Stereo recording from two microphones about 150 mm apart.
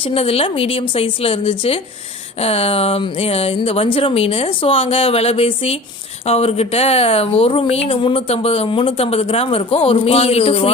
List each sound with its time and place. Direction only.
0.0 s speech: 40° left (ahead or behind)